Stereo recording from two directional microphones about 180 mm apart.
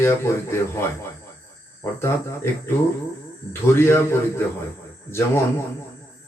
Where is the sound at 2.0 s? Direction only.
15° left (ahead or behind).